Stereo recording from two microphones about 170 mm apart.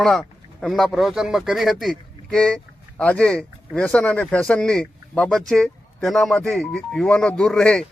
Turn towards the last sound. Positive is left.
turn(degrees=5)  # may be behind; listen again after turning